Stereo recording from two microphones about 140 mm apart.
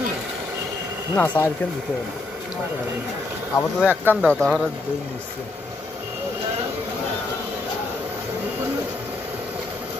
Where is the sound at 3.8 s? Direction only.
10° right (ahead or behind).